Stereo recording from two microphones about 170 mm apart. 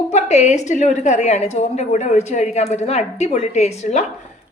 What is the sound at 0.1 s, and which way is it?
A woman's voice, 40° left (ahead or behind).